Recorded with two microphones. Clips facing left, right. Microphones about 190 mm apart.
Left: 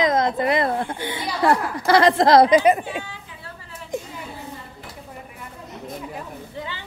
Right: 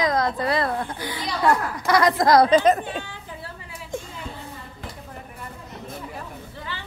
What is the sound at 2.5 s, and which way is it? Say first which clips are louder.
Speech: left 1 dB; 10° left (ahead or behind).